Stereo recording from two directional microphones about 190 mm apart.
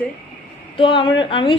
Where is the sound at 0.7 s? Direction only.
25° left (ahead or behind).